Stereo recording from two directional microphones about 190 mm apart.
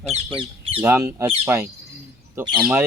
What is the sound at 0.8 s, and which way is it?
Speech, 15° right (ahead or behind).